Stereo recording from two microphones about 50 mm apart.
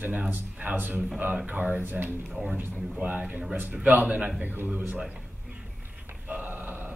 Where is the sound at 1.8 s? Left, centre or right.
Right.